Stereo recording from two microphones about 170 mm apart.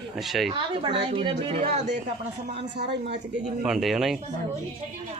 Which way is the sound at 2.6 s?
85° right.